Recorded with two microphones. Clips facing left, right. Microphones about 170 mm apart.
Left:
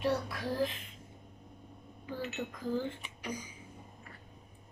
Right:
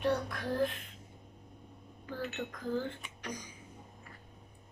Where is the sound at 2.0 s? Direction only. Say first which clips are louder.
Even; 5° left (ahead or behind).